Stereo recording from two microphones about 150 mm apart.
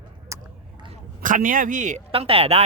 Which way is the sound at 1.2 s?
60° right (ahead or behind).